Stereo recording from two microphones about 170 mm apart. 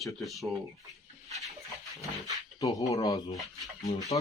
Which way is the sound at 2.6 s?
20° left (ahead or behind).